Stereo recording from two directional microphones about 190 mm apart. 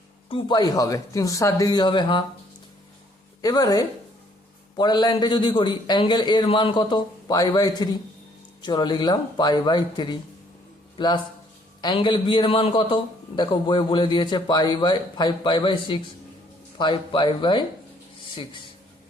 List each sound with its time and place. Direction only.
0.3 s a man's voice: 25° left (ahead or behind)
3.4 s a man's voice: 20° left (ahead or behind)